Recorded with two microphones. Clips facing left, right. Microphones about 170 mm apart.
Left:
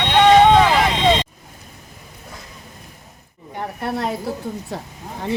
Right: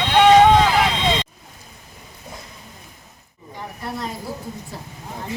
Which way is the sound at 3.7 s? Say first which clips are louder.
Left 6 dB; 65° left (ahead or behind).